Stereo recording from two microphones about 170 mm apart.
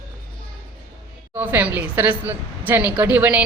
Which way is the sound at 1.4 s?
10° right (ahead or behind).